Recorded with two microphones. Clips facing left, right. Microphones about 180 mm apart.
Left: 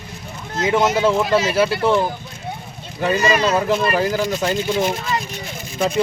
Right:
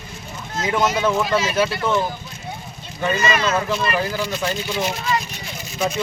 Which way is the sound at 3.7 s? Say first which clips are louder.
Left 4 dB; 45° left (ahead or behind).